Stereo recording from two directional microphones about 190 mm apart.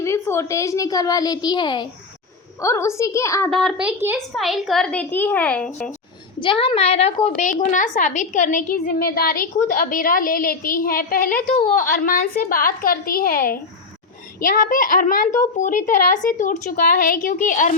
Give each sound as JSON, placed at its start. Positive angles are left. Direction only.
{"t": 0.0, "sound": "a woman's voice", "side_deg": 15}
{"t": 3.5, "sound": "a woman's voice", "side_deg": 0}
{"t": 6.4, "sound": "a woman's voice", "side_deg": 25}